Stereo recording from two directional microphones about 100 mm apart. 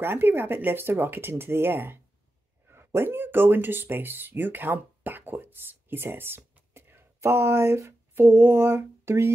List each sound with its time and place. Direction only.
0.0 s speech: 20° right (ahead or behind)